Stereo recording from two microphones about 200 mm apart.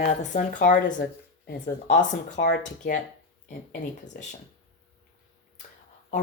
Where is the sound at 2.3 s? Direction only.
65° left (ahead or behind).